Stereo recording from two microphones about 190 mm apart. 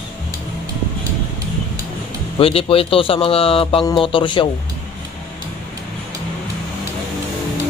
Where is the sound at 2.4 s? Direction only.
30° left (ahead or behind).